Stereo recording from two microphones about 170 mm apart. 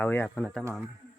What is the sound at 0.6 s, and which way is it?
Speech, 15° right (ahead or behind).